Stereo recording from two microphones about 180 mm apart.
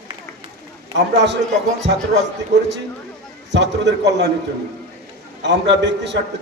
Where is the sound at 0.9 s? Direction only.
75° right (ahead or behind).